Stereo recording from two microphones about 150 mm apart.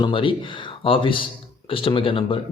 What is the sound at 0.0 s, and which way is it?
Speech, 35° left (ahead or behind).